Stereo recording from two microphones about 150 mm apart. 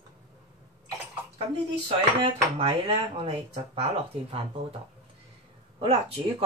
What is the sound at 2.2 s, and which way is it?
Speech, 40° right (ahead or behind).